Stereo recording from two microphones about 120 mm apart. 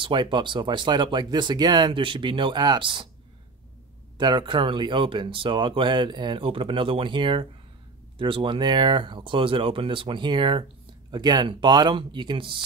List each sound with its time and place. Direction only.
0.0 s speech: 40° right (ahead or behind)
4.2 s speech: 40° right (ahead or behind)